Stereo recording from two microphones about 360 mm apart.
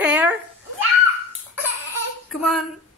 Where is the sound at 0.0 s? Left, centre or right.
Centre.